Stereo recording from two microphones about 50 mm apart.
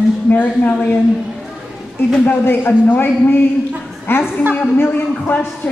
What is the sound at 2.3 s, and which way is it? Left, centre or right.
A man's voice, left.